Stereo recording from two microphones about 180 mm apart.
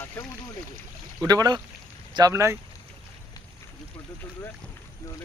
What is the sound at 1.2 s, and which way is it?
Speech, 20° right (ahead or behind).